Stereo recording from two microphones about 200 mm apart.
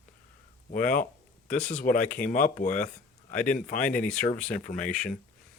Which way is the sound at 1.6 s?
40° left (ahead or behind).